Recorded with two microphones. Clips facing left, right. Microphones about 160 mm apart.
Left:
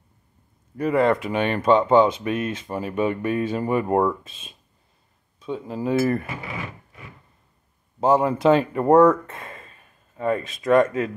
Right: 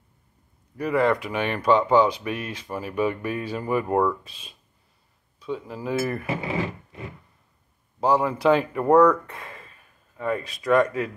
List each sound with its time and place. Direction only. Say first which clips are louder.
0.7 s speech: left 2 dB; 25° left (ahead or behind)
6.2 s speech: right 6 dB; 30° right (ahead or behind)
8.0 s speech: left 3 dB; 25° left (ahead or behind)